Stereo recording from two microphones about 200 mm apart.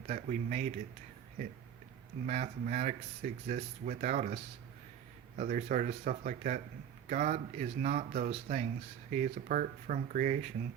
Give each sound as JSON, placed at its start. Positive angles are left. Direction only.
{"t": 0.1, "sound": "speech", "side_deg": -40}
{"t": 2.2, "sound": "speech", "side_deg": -40}
{"t": 5.4, "sound": "speech", "side_deg": -40}